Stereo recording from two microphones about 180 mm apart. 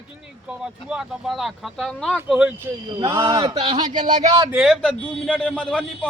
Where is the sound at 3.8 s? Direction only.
45° right (ahead or behind).